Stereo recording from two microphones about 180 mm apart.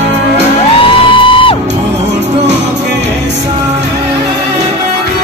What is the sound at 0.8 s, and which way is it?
Music, 30° left (ahead or behind).